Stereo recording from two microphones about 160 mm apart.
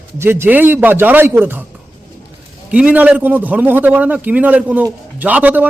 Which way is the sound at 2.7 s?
10° right (ahead or behind).